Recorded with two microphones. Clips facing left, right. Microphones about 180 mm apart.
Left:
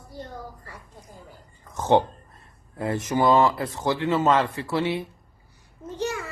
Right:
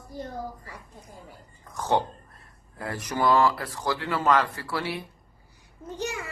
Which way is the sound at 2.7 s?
20° left (ahead or behind).